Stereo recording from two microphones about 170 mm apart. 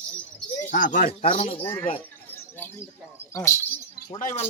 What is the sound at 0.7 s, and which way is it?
Speech, 50° left (ahead or behind).